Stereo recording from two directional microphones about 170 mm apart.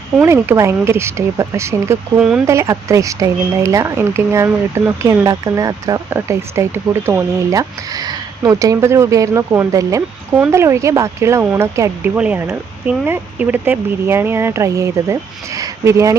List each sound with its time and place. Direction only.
0.2 s speech: 15° right (ahead or behind)